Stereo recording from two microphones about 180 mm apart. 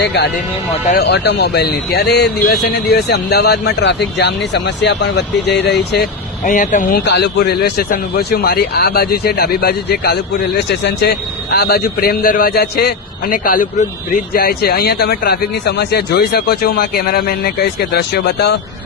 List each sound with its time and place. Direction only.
0.0 s a man's voice: 70° left (ahead or behind)
6.4 s speech: 45° left (ahead or behind)
6.9 s a man's voice: 70° left (ahead or behind)